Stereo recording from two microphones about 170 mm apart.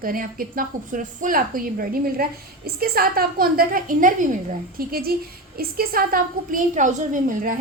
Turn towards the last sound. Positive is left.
turn(degrees=-50)  # may be behind; listen again after turning